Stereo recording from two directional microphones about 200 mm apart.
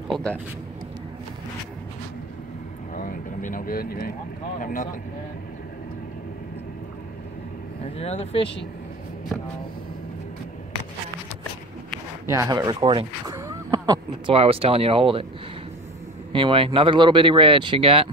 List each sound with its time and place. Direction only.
0.1 s a sound: 5° left (ahead or behind)
2.9 s vehicle: 45° left (ahead or behind)
4.6 s speech: 40° left (ahead or behind)
7.8 s speech: 30° left (ahead or behind)
12.3 s speech: 15° right (ahead or behind)
16.3 s speech: 25° right (ahead or behind)